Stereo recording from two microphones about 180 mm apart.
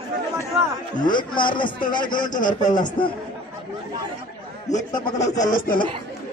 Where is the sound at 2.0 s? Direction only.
50° left (ahead or behind).